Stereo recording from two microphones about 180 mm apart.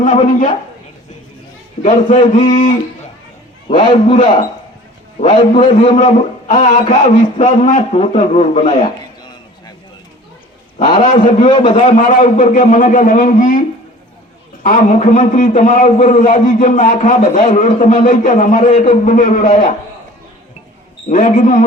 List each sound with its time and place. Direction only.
0.0 s a man's voice: 45° left (ahead or behind)
1.8 s a man's voice: 40° left (ahead or behind)
3.8 s a man's voice: 45° left (ahead or behind)
5.5 s a man's voice: 45° left (ahead or behind)
11.0 s a man's voice: 45° left (ahead or behind)
14.6 s a man's voice: 50° left (ahead or behind)
21.1 s a man's voice: 45° left (ahead or behind)